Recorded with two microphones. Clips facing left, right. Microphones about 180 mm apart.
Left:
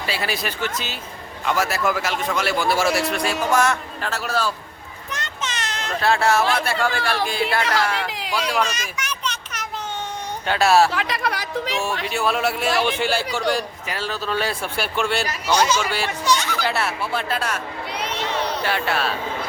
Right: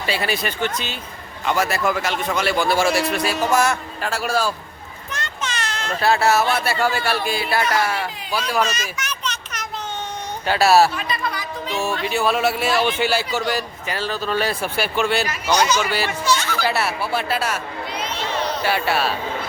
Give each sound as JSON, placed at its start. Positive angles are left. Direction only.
{"t": 0.0, "sound": "a man's voice", "side_deg": 0}
{"t": 5.1, "sound": "a sound", "side_deg": 20}
{"t": 6.0, "sound": "a man's voice", "side_deg": -5}
{"t": 7.9, "sound": "speech", "side_deg": 85}
{"t": 8.6, "sound": "a sound", "side_deg": 10}
{"t": 10.4, "sound": "a man's voice", "side_deg": -5}
{"t": 10.9, "sound": "speech", "side_deg": 90}
{"t": 12.0, "sound": "a man's voice", "side_deg": 0}
{"t": 16.2, "sound": "music", "side_deg": 15}
{"t": 16.6, "sound": "a man's voice", "side_deg": -5}
{"t": 17.9, "sound": "crowd", "side_deg": 65}
{"t": 18.6, "sound": "a man's voice", "side_deg": -5}